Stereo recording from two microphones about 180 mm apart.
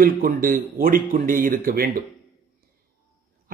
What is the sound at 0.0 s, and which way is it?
Speech, 55° right (ahead or behind).